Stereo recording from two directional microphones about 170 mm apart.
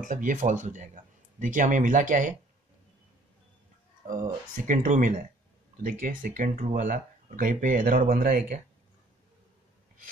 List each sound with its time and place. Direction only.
0.0 s speech: 50° right (ahead or behind)
4.6 s speech: 50° right (ahead or behind)